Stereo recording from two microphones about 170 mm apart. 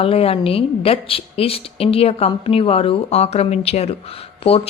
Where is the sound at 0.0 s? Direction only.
35° left (ahead or behind).